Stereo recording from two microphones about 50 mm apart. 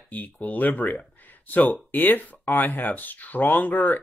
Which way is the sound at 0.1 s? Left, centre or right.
Left.